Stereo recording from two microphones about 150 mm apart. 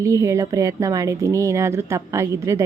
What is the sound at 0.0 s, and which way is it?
A woman's voice, 20° right (ahead or behind).